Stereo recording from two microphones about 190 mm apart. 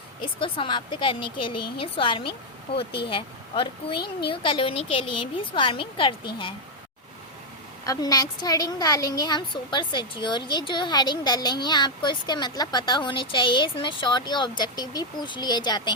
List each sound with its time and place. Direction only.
0.4 s a woman's voice: 25° left (ahead or behind)
7.9 s a woman's voice: 20° left (ahead or behind)